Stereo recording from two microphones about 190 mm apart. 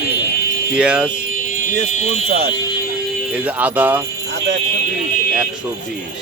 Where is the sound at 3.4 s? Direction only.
10° right (ahead or behind).